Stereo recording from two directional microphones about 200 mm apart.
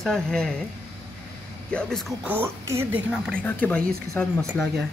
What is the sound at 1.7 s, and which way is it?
Speech, 5° left (ahead or behind).